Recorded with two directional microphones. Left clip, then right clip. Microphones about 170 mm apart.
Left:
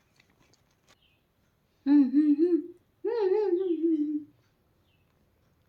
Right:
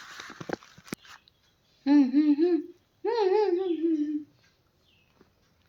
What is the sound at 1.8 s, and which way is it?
Humming, 40° left (ahead or behind).